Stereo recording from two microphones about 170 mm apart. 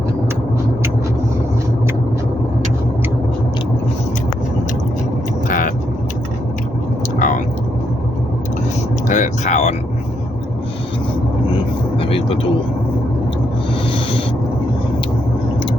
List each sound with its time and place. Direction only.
5.5 s vehicle: 50° left (ahead or behind)
7.2 s whispering: 50° left (ahead or behind)
9.0 s vehicle: 45° left (ahead or behind)
11.5 s vehicle: 30° left (ahead or behind)